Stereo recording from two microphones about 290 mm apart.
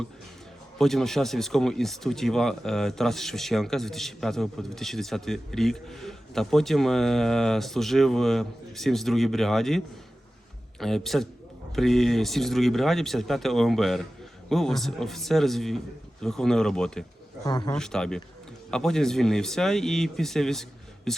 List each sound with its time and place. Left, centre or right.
0.8 s speech: centre
17.4 s a man's voice: centre
17.7 s speech: centre